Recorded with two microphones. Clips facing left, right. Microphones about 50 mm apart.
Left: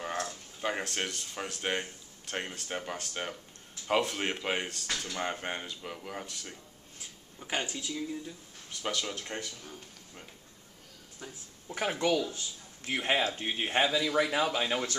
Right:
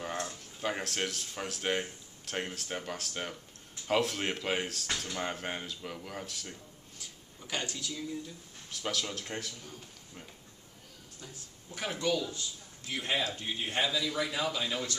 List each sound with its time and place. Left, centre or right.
0.3 s speech: centre
4.8 s speech: centre
5.1 s speech: centre
7.0 s speech: left
8.7 s speech: centre
11.7 s speech: left